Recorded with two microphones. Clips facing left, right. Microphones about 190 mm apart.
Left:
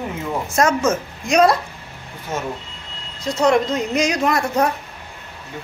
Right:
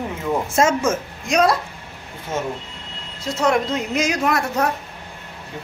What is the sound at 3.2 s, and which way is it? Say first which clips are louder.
Speech: left 3 dB; 5° right (ahead or behind).